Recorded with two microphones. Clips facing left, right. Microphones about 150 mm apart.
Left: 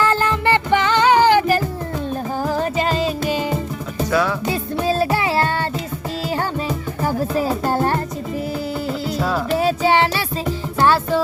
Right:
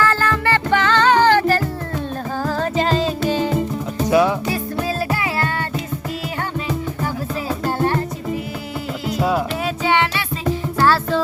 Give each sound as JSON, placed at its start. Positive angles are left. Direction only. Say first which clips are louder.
{"t": 0.0, "sound": "music", "louder": "left 1 dB", "side_deg": 20}
{"t": 4.1, "sound": "music", "louder": "right 4 dB", "side_deg": -20}
{"t": 4.4, "sound": "music", "louder": "left 2 dB", "side_deg": 25}
{"t": 7.0, "sound": "music", "louder": "left 5 dB", "side_deg": 40}
{"t": 9.1, "sound": "music", "louder": "right 4 dB", "side_deg": -15}
{"t": 9.6, "sound": "music", "louder": "left 3 dB", "side_deg": 35}
{"t": 10.8, "sound": "music", "louder": "left 2 dB", "side_deg": 20}